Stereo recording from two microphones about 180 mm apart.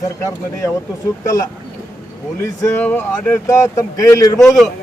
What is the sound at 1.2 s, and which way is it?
Speech, 15° left (ahead or behind).